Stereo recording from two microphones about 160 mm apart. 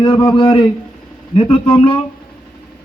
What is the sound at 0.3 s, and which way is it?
A man's voice, 35° left (ahead or behind).